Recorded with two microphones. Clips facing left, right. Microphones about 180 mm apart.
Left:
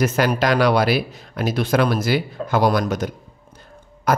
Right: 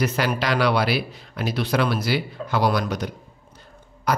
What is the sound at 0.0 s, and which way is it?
Speech, 45° left (ahead or behind).